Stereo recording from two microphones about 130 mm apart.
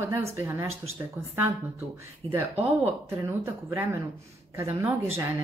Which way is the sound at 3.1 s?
20° right (ahead or behind).